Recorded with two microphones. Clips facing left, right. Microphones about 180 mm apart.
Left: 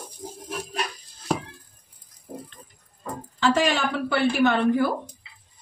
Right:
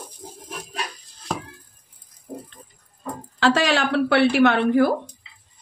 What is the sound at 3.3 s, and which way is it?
A woman's voice, 90° right.